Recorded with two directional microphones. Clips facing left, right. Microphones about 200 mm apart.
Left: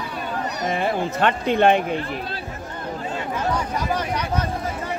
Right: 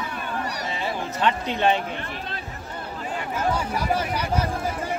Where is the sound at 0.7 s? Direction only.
55° left (ahead or behind).